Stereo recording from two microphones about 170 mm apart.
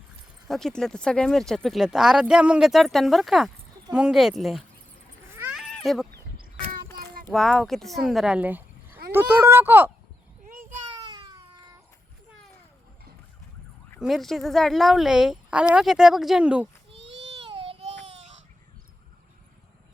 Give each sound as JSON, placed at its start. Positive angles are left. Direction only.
{"t": 0.4, "sound": "speech", "side_deg": 0}
{"t": 5.3, "sound": "cat", "side_deg": -15}
{"t": 5.5, "sound": "cat", "side_deg": 0}
{"t": 7.3, "sound": "speech", "side_deg": 0}
{"t": 10.8, "sound": "baby cry", "side_deg": -25}
{"t": 14.0, "sound": "speech", "side_deg": 0}
{"t": 17.0, "sound": "a sound", "side_deg": -90}
{"t": 17.4, "sound": "a sound", "side_deg": -35}